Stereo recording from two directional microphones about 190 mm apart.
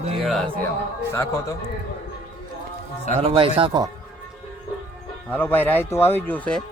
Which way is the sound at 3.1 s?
30° right (ahead or behind).